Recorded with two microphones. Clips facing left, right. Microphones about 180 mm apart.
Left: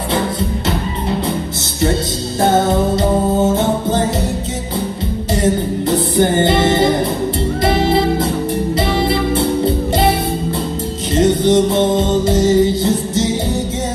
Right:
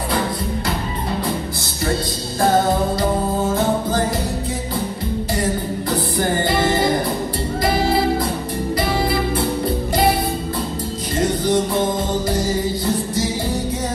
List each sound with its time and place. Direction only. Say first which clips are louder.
2.4 s music: left 3 dB; 25° left (ahead or behind)
5.3 s music: left 8 dB; 25° left (ahead or behind)
11.1 s music: left 6 dB; 25° left (ahead or behind)